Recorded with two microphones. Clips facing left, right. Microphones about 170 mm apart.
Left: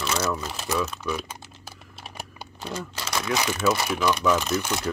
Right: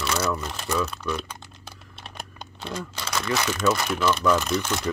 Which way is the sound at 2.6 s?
5° left (ahead or behind).